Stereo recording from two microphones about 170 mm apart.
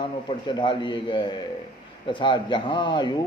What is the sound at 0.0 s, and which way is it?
Speech, 30° left (ahead or behind).